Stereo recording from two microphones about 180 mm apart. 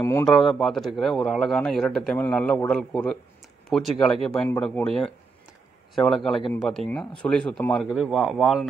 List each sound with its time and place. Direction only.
0.0 s a man's voice: 15° left (ahead or behind)
0.3 s a man's voice: centre (ahead or behind)